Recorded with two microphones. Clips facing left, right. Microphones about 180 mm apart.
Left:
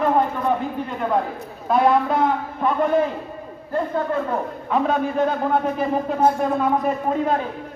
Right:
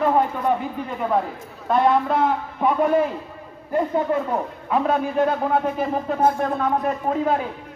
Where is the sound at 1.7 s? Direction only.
Centre (ahead or behind).